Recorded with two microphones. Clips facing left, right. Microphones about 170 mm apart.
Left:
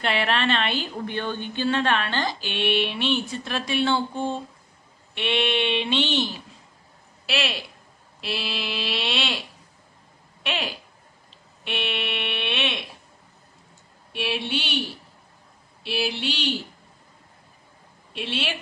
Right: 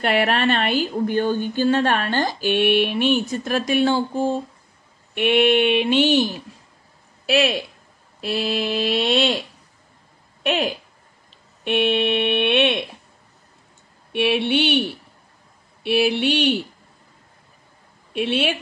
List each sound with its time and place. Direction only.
0.0 s speech: 45° right (ahead or behind)
6.0 s speech: 10° right (ahead or behind)
7.2 s speech: 45° right (ahead or behind)
10.4 s a woman's voice: 45° right (ahead or behind)
14.1 s a sound: 60° right (ahead or behind)
18.1 s a sound: 55° right (ahead or behind)